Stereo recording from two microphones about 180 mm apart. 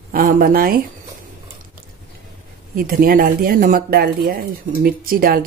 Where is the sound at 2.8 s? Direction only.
55° right (ahead or behind).